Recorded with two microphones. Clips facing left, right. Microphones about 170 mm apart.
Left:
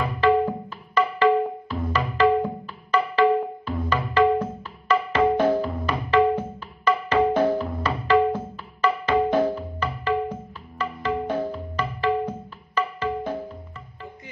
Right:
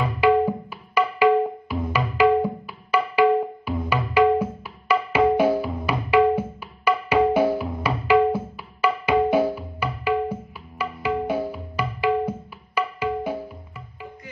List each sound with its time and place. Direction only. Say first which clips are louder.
0.2 s music: right 2 dB; 10° right (ahead or behind)